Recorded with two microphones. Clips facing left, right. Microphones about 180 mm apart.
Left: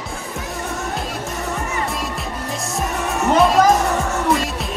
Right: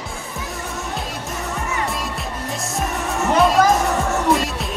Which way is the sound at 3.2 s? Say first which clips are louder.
Left 1 dB; centre (ahead or behind).